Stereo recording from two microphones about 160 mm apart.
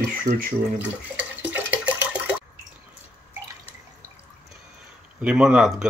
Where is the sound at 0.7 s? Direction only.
10° right (ahead or behind).